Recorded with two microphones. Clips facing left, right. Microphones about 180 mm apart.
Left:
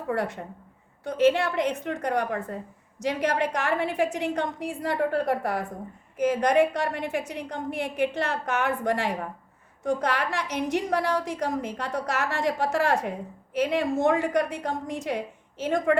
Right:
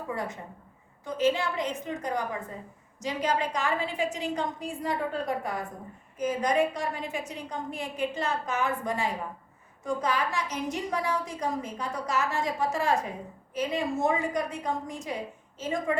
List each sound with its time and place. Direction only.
0.1 s a woman's voice: 70° left (ahead or behind)